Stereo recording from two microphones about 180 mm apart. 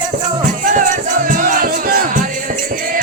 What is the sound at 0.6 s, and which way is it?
Music, 45° right (ahead or behind).